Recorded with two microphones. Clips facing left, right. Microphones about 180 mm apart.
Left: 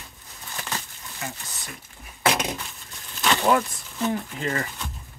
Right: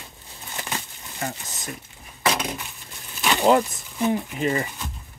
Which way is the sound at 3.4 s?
20° right (ahead or behind).